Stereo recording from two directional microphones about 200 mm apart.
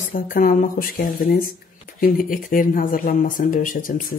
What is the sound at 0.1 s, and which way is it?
Speech, 45° left (ahead or behind).